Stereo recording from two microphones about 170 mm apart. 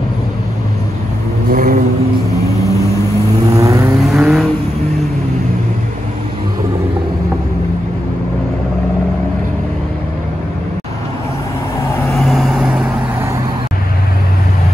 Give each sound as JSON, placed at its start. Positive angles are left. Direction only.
{"t": 1.5, "sound": "vehicle", "side_deg": -55}
{"t": 3.5, "sound": "vehicle", "side_deg": -20}
{"t": 4.0, "sound": "vehicle", "side_deg": 0}
{"t": 12.3, "sound": "vehicle", "side_deg": 0}